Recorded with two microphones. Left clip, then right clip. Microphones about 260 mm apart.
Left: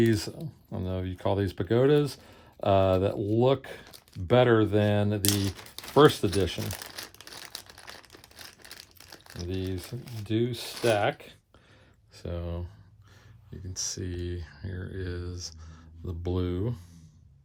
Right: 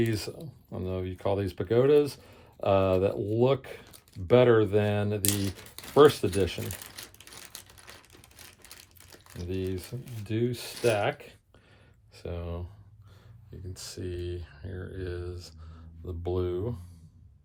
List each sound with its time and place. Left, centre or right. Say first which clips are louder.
0.0 s speech: left 4 dB; left
7.5 s crumpling: left 5 dB; left
9.5 s speech: right 1 dB; left
13.7 s speech: left 3 dB; left